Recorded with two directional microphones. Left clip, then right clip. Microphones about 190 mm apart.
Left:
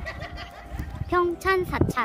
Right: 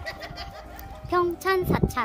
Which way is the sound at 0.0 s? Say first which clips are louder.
Even; 50° right (ahead or behind).